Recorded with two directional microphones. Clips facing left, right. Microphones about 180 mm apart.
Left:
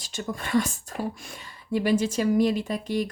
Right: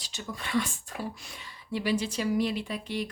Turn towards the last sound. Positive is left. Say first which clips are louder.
# left 6 dB
turn(degrees=45)  # may be behind; listen again after turning